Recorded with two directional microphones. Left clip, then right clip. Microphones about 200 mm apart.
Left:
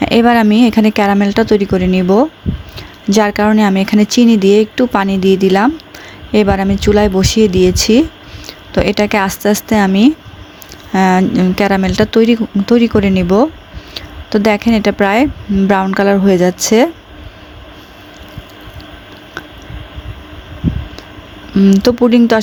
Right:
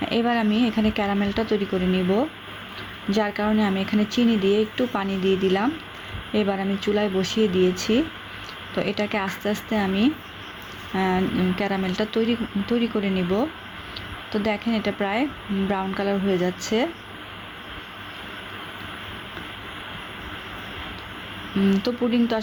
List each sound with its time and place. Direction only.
0.0 s speech: 55° left (ahead or behind)
21.7 s speech: 55° left (ahead or behind)